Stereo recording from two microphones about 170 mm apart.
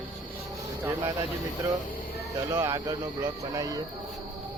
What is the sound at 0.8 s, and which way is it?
Speech, 25° right (ahead or behind).